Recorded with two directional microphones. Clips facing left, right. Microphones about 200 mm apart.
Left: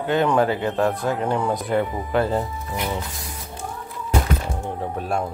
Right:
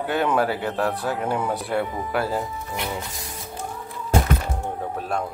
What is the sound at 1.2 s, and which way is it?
Speech, 5° right (ahead or behind).